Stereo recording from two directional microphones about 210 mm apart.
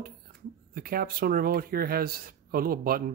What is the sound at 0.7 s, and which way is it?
Speech, 45° right (ahead or behind).